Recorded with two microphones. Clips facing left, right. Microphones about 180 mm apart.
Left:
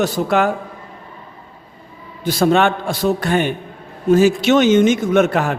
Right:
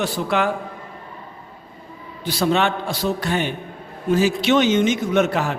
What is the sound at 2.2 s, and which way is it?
A man's voice, 50° left (ahead or behind).